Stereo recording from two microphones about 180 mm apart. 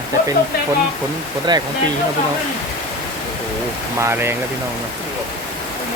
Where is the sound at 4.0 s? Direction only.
15° right (ahead or behind).